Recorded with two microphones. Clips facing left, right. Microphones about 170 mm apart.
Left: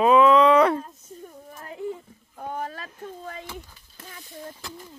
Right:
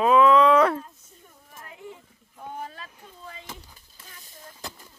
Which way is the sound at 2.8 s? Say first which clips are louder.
Left 7 dB; 55° left (ahead or behind).